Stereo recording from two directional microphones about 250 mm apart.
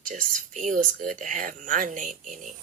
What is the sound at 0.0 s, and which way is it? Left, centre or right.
Speech, right.